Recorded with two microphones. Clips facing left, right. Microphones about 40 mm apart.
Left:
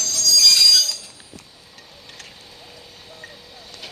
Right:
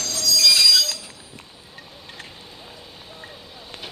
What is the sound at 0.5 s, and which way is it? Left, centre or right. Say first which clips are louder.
Train: left 1 dB; centre.